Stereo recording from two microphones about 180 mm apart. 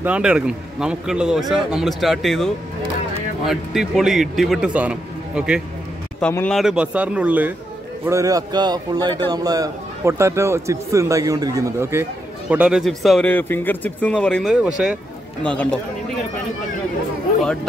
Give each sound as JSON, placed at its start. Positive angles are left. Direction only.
{"t": 0.0, "sound": "a man's voice", "side_deg": -5}
{"t": 6.1, "sound": "a man's voice", "side_deg": 10}
{"t": 6.6, "sound": "a man's voice", "side_deg": -5}